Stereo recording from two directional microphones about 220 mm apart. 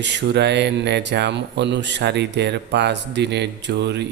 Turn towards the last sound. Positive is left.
turn(degrees=-50)  # may be behind; listen again after turning